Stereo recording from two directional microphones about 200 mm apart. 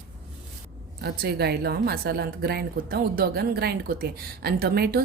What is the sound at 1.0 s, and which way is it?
A woman's voice, 50° right (ahead or behind).